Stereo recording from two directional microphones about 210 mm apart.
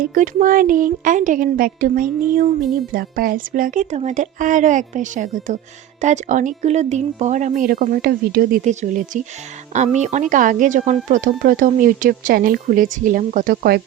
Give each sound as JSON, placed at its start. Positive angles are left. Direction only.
{"t": 0.0, "sound": "a woman's voice", "side_deg": -40}